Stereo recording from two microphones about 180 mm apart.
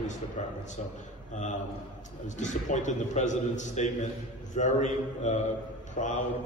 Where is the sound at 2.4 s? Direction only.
45° left (ahead or behind).